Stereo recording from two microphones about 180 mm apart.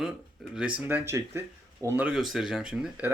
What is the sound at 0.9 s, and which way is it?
Speech, 10° right (ahead or behind).